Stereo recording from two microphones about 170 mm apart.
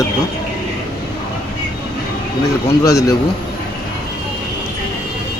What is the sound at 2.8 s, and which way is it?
Speech, 20° left (ahead or behind).